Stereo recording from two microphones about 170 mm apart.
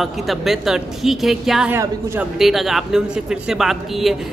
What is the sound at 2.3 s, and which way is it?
Speech, centre (ahead or behind).